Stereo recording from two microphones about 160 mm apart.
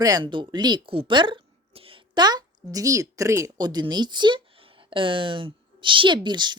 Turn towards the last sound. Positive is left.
turn(degrees=-30)  # may be behind; listen again after turning